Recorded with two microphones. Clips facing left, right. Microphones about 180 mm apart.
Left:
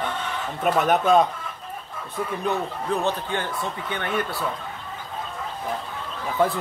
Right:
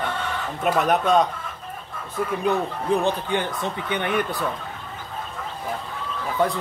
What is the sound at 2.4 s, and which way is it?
Speech, 15° right (ahead or behind).